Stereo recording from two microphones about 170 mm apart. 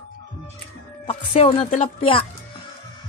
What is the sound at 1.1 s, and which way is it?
Speech, 35° left (ahead or behind).